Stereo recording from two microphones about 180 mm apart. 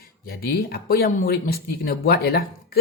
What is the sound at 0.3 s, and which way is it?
Speech, 60° left (ahead or behind).